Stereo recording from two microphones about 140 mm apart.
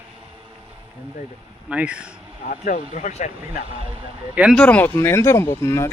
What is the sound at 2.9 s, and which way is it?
Speech, 55° left (ahead or behind).